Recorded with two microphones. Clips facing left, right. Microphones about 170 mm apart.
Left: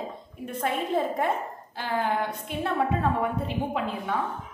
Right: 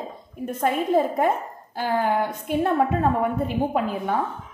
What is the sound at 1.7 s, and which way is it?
A woman's voice, 45° right (ahead or behind).